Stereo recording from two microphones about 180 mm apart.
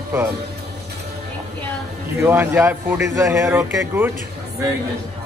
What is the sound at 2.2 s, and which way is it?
Speech, 15° right (ahead or behind).